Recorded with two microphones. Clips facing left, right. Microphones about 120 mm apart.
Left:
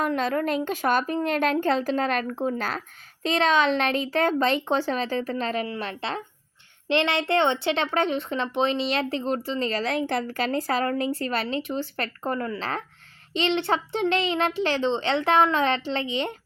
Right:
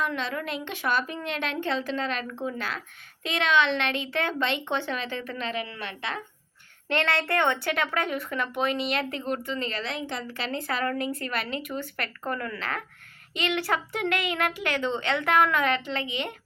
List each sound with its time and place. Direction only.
0.0 s a woman's voice: 45° left (ahead or behind)
6.8 s a woman's voice: 20° left (ahead or behind)